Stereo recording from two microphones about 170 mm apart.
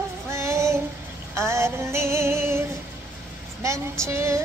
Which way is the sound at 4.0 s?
15° right (ahead or behind).